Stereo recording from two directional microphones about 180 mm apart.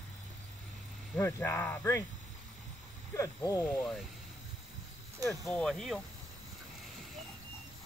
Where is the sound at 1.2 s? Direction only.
15° left (ahead or behind).